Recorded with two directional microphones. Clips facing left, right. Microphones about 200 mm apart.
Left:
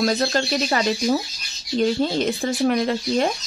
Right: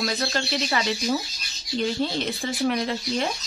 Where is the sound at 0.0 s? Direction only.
40° left (ahead or behind).